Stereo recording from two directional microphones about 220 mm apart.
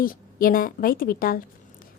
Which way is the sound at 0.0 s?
40° left (ahead or behind).